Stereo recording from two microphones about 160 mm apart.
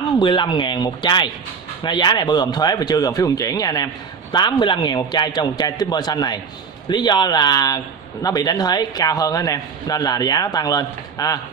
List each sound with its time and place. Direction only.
0.2 s speech: 30° left (ahead or behind)